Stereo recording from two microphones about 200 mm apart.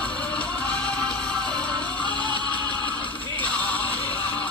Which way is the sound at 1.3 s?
20° right (ahead or behind).